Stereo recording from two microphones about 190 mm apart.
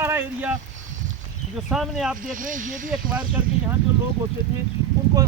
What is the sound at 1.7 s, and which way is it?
Speech, centre (ahead or behind).